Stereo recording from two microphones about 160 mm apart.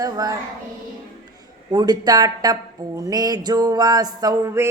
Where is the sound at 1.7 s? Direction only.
25° right (ahead or behind).